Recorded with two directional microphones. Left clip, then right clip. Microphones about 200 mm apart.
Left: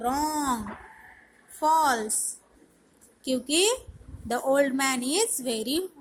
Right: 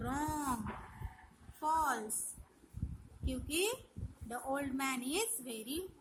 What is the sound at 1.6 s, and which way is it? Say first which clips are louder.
Speech: left 12 dB; 20° left (ahead or behind).